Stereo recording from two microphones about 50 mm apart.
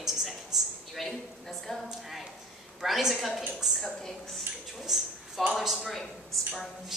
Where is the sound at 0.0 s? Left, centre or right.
Centre.